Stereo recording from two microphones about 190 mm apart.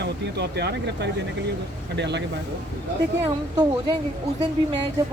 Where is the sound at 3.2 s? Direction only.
20° right (ahead or behind).